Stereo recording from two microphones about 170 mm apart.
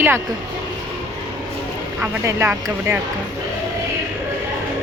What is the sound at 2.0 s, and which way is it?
Speech, 15° right (ahead or behind).